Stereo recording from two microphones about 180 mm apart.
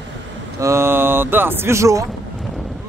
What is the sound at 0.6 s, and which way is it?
Speech, 15° right (ahead or behind).